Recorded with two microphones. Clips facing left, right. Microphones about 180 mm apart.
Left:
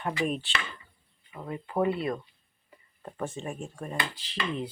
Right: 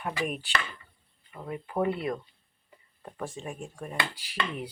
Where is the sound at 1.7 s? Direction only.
20° left (ahead or behind).